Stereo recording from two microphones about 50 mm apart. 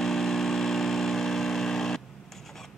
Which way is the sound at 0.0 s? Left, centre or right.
Centre.